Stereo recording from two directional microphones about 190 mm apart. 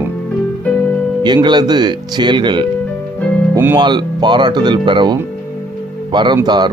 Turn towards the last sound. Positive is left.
turn(degrees=-25)  # may be behind; listen again after turning